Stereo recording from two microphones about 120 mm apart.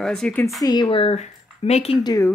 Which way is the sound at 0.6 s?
35° left (ahead or behind).